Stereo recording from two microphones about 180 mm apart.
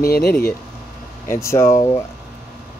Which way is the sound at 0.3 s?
15° left (ahead or behind).